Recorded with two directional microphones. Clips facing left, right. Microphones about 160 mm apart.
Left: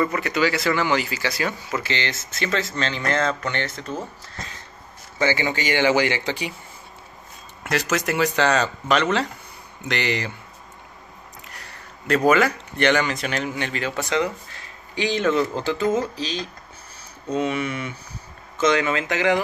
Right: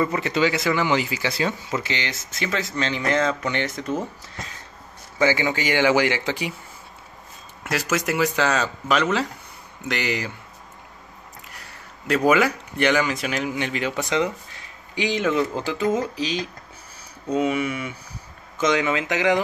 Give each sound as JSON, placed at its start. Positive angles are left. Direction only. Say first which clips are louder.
{"t": 0.0, "sound": "speech", "louder": "even", "side_deg": -25}
{"t": 5.2, "sound": "speech", "louder": "right 1 dB", "side_deg": -10}
{"t": 7.6, "sound": "speech", "louder": "left 1 dB", "side_deg": -5}
{"t": 12.3, "sound": "speech", "louder": "even", "side_deg": -10}